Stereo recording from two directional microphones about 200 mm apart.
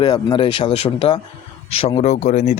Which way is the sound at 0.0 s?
20° left (ahead or behind).